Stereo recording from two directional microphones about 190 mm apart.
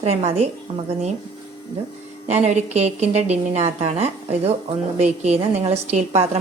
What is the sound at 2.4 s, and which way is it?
A woman's voice, 35° right (ahead or behind).